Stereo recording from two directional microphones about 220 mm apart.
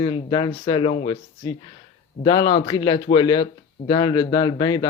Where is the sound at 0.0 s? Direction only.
20° left (ahead or behind).